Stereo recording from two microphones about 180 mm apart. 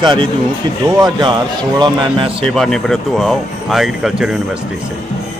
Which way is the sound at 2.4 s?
Centre (ahead or behind).